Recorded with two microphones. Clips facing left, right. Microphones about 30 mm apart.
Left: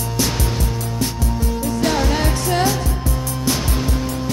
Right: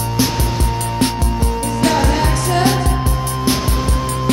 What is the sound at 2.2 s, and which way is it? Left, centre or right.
Music, right.